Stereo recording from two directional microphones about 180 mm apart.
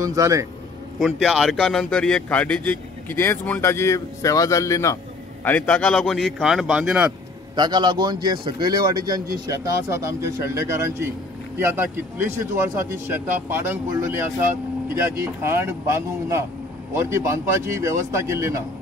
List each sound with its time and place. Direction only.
0.0 s a man's voice: 20° right (ahead or behind)
0.9 s a man's voice: centre (ahead or behind)
7.5 s a man's voice: 25° right (ahead or behind)